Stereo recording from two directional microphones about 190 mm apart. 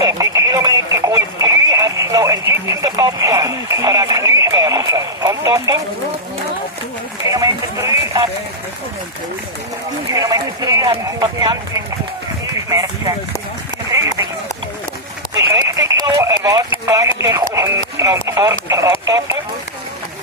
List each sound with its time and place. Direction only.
0.0 s radio: 20° right (ahead or behind)
7.2 s speech: 20° right (ahead or behind)
10.1 s speech: 20° right (ahead or behind)
12.5 s a sound: 15° right (ahead or behind)
15.5 s clip-clop: 15° right (ahead or behind)
18.3 s a sound: 15° right (ahead or behind)